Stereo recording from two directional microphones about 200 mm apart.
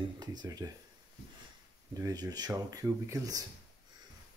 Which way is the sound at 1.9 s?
20° right (ahead or behind).